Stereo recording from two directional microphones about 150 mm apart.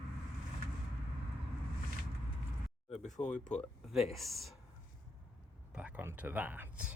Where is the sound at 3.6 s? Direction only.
Centre (ahead or behind).